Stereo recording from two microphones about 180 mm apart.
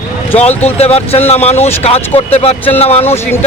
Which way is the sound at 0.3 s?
35° left (ahead or behind).